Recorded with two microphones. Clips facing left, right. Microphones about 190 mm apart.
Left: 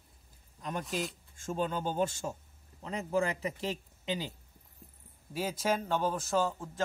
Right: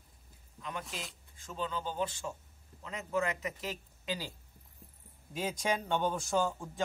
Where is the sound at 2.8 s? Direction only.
35° left (ahead or behind).